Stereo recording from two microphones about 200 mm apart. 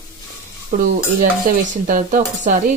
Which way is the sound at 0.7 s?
40° right (ahead or behind).